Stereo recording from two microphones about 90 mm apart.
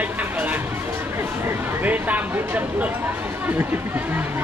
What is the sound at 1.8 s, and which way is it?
Speech, 20° right (ahead or behind).